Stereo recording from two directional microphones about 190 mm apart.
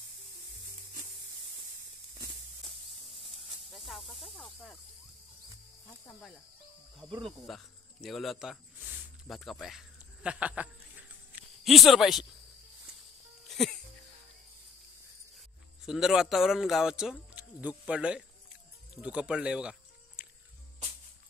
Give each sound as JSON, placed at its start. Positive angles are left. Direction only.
{"t": 2.1, "sound": "a sound", "side_deg": -20}
{"t": 3.4, "sound": "speech", "side_deg": 0}
{"t": 7.4, "sound": "speech", "side_deg": 0}
{"t": 13.5, "sound": "music", "side_deg": 0}
{"t": 15.8, "sound": "speech", "side_deg": -5}